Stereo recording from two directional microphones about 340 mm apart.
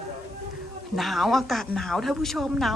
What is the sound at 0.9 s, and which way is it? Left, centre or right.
A woman's voice, centre.